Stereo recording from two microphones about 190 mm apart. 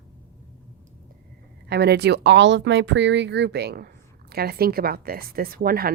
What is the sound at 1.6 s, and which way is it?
Speech, 60° right (ahead or behind).